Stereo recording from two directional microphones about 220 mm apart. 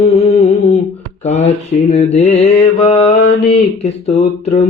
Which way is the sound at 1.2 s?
30° left (ahead or behind).